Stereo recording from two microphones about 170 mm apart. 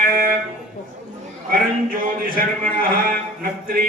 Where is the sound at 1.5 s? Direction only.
55° right (ahead or behind).